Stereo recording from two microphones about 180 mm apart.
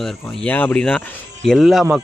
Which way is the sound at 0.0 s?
5° left (ahead or behind).